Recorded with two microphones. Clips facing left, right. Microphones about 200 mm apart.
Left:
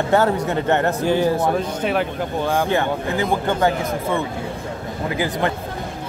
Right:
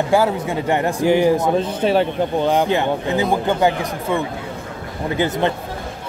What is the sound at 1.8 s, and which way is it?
Speech, 30° right (ahead or behind).